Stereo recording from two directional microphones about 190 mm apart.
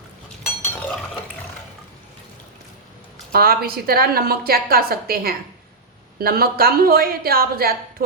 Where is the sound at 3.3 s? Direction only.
50° right (ahead or behind).